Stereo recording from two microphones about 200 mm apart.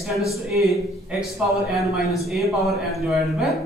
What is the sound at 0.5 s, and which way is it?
Speech, centre (ahead or behind).